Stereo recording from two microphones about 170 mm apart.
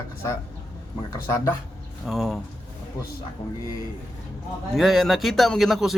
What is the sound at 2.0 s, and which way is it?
Speech, centre (ahead or behind).